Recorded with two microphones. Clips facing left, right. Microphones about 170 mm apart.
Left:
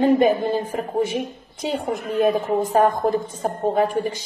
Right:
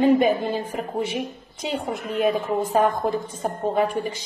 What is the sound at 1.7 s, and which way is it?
A woman's voice, 40° left (ahead or behind).